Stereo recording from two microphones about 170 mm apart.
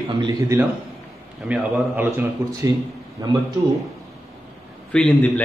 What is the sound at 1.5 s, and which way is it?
Speech, 10° right (ahead or behind).